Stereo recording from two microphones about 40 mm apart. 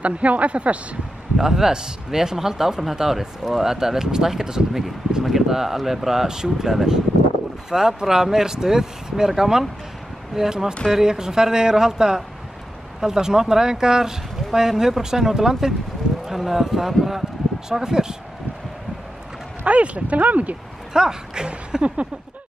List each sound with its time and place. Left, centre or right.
0.0 s speech: right
1.4 s speech: centre
19.6 s speech: right
20.9 s speech: centre
21.7 s a sound: centre